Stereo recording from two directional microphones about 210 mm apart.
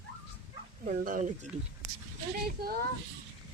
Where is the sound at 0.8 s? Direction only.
40° right (ahead or behind).